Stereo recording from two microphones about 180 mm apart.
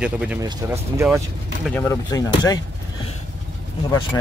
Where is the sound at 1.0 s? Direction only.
15° right (ahead or behind).